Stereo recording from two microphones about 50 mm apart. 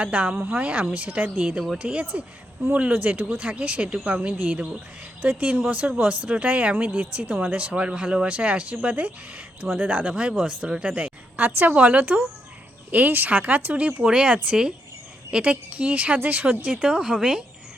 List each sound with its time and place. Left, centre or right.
0.0 s speech: right
11.3 s speech: right
14.0 s speech: centre; by 16.6 s right
16.8 s speech: right
17.2 s speech: centre